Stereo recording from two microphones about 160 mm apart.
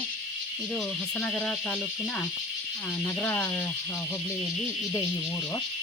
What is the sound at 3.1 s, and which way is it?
Speech, 10° left (ahead or behind).